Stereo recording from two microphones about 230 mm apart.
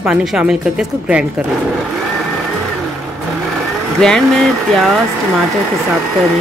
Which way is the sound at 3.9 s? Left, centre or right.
Centre.